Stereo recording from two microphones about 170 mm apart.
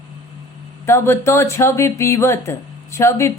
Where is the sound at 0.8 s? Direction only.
15° left (ahead or behind).